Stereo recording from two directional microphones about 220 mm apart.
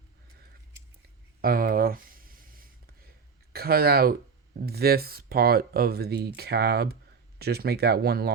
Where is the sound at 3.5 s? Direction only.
45° right (ahead or behind).